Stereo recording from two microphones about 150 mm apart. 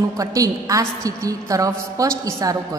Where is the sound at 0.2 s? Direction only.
20° right (ahead or behind).